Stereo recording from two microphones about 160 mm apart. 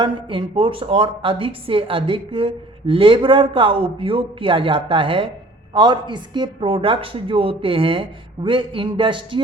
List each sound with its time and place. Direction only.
0.0 s a woman's voice: 30° right (ahead or behind)